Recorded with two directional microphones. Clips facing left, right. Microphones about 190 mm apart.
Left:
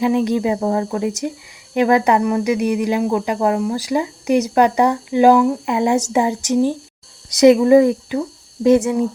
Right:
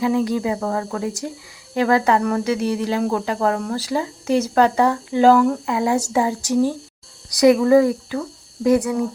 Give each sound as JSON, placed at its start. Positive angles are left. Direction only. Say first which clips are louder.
{"t": 0.0, "sound": "speech", "louder": "left 3 dB", "side_deg": 20}